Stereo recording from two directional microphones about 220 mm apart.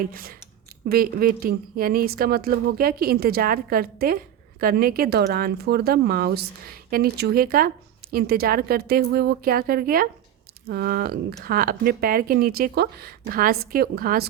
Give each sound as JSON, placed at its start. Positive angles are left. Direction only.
{"t": 0.1, "sound": "a woman's voice", "side_deg": -40}